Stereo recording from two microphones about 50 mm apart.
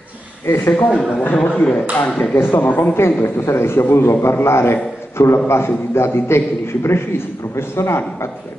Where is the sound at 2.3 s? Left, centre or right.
Left.